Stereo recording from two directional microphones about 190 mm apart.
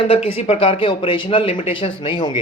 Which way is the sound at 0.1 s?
30° left (ahead or behind).